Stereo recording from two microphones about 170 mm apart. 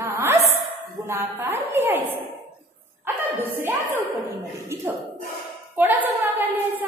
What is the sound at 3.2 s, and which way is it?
Speech, 10° right (ahead or behind).